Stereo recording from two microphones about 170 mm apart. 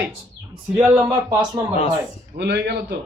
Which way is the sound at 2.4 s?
80° right.